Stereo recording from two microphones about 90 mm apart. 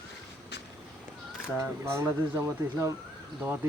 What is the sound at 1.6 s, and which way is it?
Speech, 30° right (ahead or behind).